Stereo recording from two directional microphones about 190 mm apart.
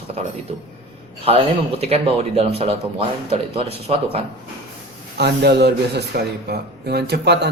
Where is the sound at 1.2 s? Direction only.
30° right (ahead or behind).